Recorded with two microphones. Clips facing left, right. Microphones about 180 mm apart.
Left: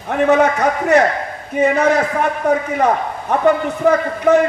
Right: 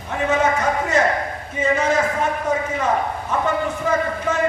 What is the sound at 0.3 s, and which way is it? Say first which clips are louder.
A man's voice: left 5 dB; 65° left (ahead or behind).